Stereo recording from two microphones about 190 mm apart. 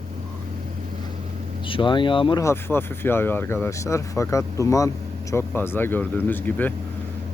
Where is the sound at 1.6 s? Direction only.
25° left (ahead or behind).